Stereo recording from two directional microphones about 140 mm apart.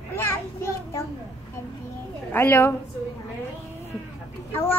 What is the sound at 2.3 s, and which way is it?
Speech, 15° left (ahead or behind).